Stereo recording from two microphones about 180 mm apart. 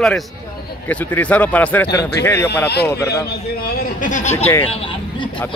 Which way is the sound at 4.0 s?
45° left (ahead or behind).